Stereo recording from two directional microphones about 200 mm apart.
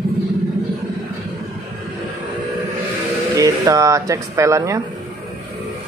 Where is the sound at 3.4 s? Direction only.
15° right (ahead or behind).